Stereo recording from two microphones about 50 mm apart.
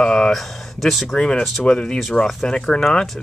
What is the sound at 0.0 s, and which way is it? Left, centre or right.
Speech, centre.